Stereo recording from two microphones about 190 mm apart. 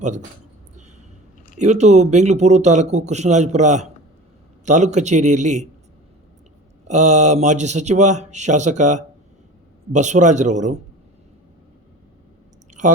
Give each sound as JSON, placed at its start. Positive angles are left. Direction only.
{"t": 0.0, "sound": "speech", "side_deg": -40}
{"t": 1.5, "sound": "speech", "side_deg": -40}
{"t": 6.8, "sound": "speech", "side_deg": -40}